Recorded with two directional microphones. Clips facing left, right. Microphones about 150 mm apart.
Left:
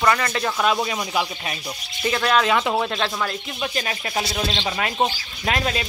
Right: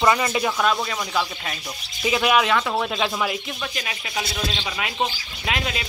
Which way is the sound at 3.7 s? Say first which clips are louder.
Left 4 dB; 40° left (ahead or behind).